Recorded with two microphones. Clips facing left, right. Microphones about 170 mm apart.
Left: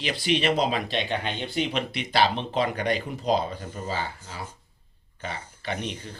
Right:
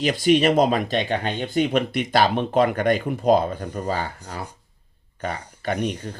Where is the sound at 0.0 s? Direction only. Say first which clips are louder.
Right 7 dB; 45° right (ahead or behind).